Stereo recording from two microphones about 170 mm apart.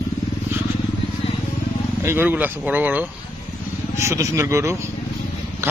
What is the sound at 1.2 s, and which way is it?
Vehicle, 35° left (ahead or behind).